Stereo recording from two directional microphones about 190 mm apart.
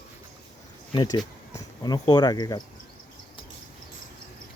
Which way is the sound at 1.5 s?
20° left (ahead or behind).